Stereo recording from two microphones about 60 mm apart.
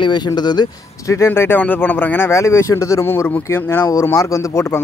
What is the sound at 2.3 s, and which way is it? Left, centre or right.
Speech, left.